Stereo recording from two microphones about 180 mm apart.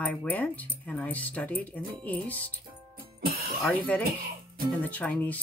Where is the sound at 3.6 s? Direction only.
10° left (ahead or behind).